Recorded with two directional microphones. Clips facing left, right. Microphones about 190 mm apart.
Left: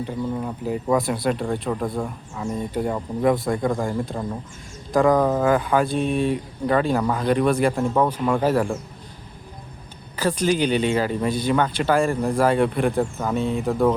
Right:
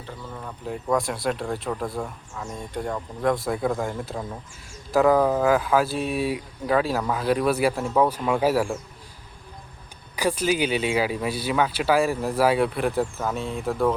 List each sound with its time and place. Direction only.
0.0 s speech: 15° left (ahead or behind)
0.6 s speech: 5° left (ahead or behind)
10.2 s speech: 10° right (ahead or behind)